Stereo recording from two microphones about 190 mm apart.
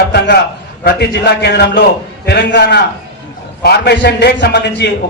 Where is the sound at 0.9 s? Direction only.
60° left (ahead or behind).